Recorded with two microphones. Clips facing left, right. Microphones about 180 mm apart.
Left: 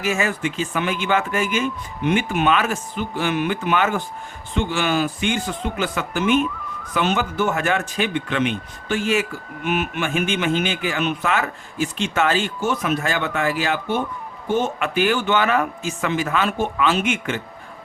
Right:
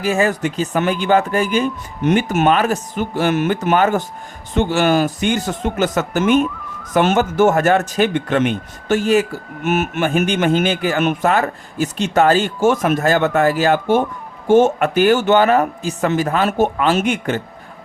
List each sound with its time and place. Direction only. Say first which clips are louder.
0.0 s speech: right 5 dB; 35° right (ahead or behind)